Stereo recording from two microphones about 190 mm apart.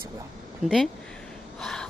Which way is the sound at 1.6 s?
5° left (ahead or behind).